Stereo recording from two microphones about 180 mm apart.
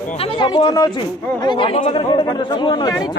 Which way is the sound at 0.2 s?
30° left (ahead or behind).